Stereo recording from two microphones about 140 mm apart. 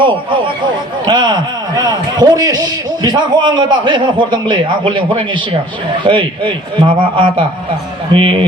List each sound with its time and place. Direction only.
0.0 s a man's voice: 35° right (ahead or behind)